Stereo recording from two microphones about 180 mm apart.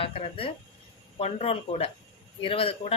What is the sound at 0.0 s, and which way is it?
Speech, 30° left (ahead or behind).